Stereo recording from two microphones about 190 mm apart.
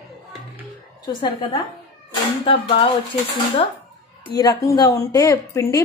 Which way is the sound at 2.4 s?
30° left (ahead or behind).